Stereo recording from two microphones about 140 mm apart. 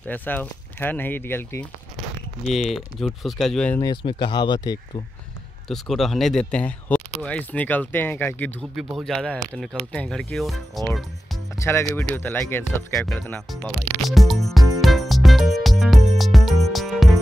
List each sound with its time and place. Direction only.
0.0 s speech: 10° left (ahead or behind)
2.0 s speech: centre (ahead or behind)
3.8 s speech: 35° left (ahead or behind)
5.7 s speech: centre (ahead or behind)
8.7 s speech: centre (ahead or behind)
11.5 s speech: 20° left (ahead or behind)
13.5 s music: centre (ahead or behind)